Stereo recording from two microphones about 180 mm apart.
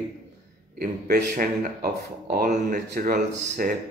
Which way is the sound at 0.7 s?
55° right (ahead or behind).